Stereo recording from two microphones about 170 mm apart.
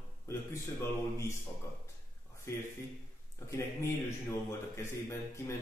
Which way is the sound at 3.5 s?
15° left (ahead or behind).